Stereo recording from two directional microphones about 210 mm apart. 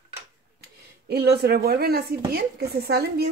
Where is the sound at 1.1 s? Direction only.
50° right (ahead or behind).